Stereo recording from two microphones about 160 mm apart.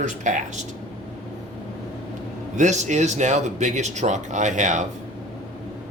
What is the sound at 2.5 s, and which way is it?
Speech, 45° right (ahead or behind).